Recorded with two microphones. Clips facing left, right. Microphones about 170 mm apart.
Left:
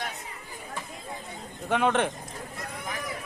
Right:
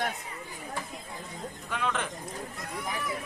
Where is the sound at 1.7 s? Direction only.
60° left (ahead or behind).